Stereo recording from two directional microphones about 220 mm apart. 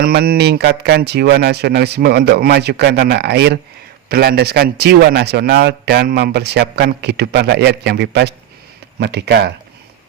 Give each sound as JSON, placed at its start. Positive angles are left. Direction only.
{"t": 0.0, "sound": "a man's voice", "side_deg": -40}